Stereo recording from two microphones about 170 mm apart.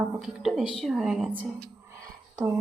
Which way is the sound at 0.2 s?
Centre (ahead or behind).